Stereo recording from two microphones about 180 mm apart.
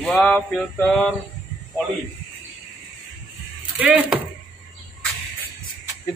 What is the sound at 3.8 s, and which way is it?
Speech, 5° right (ahead or behind).